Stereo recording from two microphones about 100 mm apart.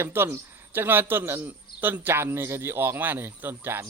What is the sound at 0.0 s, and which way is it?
Speech, 25° right (ahead or behind).